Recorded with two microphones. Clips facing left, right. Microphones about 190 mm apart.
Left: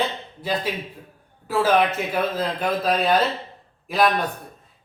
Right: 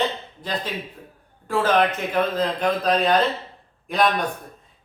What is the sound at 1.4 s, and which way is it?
A man's voice, 5° left (ahead or behind).